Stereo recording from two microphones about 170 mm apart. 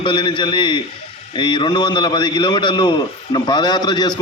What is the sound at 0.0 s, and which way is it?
A man's voice, 30° left (ahead or behind).